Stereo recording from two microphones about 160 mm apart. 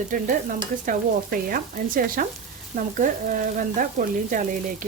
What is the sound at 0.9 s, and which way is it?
Stir, 60° right (ahead or behind).